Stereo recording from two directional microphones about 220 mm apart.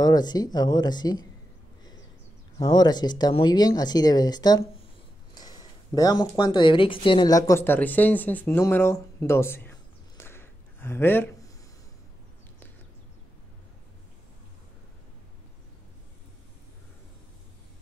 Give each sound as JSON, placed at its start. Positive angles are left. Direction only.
{"t": 0.0, "sound": "speech", "side_deg": 20}
{"t": 2.6, "sound": "speech", "side_deg": 20}